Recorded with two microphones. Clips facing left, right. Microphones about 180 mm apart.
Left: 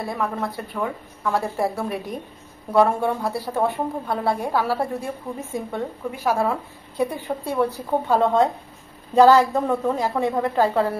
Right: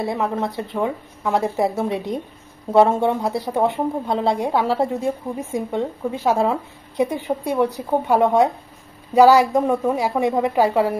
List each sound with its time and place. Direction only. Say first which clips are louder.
0.0 s a woman's voice: right 4 dB; 25° right (ahead or behind)